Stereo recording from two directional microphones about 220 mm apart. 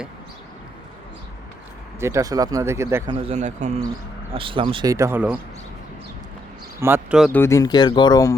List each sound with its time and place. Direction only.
2.0 s speech: 15° right (ahead or behind)
3.2 s speech: 30° right (ahead or behind); by 5.4 s 5° right (ahead or behind)
6.7 s speech: 10° right (ahead or behind)
7.3 s speech: 10° left (ahead or behind)